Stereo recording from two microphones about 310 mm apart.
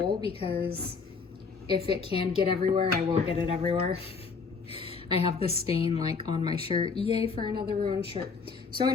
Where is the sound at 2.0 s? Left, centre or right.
Centre.